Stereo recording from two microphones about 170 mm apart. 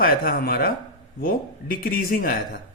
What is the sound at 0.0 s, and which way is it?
Speech, 60° left (ahead or behind).